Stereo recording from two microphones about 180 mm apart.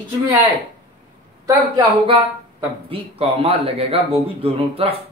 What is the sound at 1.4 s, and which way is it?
A man's voice, 25° right (ahead or behind).